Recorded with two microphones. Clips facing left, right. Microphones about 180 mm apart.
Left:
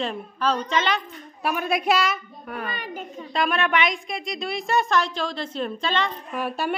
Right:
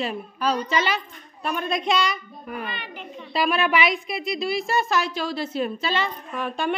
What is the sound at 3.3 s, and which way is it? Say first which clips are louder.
A woman's voice: right 1 dB; 5° right (ahead or behind).